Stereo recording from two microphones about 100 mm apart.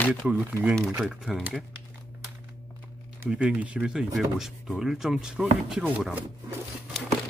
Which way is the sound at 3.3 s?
10° right (ahead or behind).